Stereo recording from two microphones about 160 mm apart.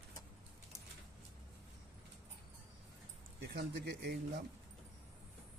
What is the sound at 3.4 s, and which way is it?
Speech, 90° right.